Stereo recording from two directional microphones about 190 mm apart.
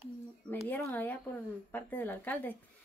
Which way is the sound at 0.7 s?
10° left (ahead or behind).